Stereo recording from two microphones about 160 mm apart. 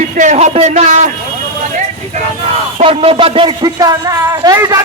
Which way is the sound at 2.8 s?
35° right (ahead or behind).